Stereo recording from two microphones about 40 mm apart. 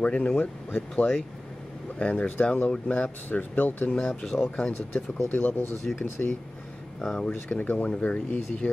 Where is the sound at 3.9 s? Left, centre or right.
Left.